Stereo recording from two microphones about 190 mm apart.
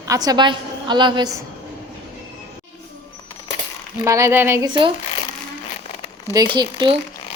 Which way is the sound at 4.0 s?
15° right (ahead or behind).